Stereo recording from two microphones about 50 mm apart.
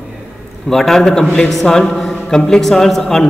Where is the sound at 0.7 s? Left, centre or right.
Centre.